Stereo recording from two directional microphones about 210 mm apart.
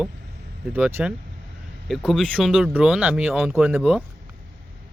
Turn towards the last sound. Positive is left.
turn(degrees=0)  # may be behind; listen again after turning